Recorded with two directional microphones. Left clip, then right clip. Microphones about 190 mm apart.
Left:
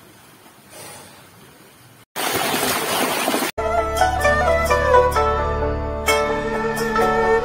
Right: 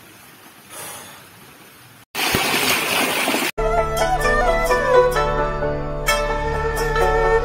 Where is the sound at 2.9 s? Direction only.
25° left (ahead or behind).